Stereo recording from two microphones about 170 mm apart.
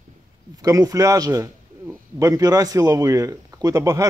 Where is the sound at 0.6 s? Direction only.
20° right (ahead or behind).